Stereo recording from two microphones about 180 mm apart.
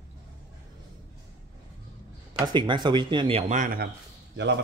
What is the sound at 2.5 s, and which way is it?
Speech, 25° right (ahead or behind).